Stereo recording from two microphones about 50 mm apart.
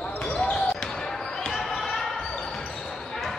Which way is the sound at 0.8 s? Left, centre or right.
Centre.